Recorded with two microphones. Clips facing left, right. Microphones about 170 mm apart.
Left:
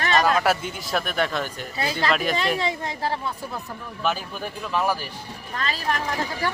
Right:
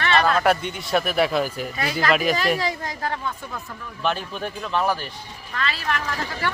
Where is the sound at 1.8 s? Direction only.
30° left (ahead or behind).